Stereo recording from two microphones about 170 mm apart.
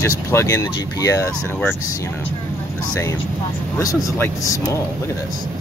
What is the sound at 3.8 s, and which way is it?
Speech, 20° left (ahead or behind).